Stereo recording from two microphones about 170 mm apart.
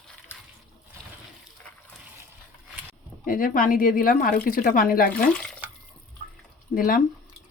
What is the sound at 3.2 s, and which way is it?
Speech, 55° left (ahead or behind).